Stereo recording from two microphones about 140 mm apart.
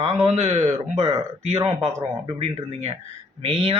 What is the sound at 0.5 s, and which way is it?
Speech, 25° right (ahead or behind).